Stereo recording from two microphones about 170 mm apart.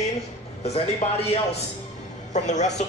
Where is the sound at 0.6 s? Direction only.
35° left (ahead or behind).